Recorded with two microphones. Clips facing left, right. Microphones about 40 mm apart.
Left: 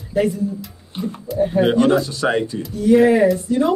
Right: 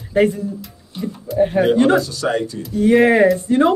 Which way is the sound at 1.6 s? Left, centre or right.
Right.